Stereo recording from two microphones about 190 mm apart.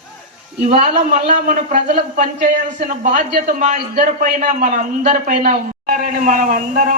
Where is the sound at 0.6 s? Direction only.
40° right (ahead or behind).